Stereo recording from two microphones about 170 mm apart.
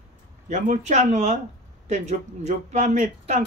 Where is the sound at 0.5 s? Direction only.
45° right (ahead or behind).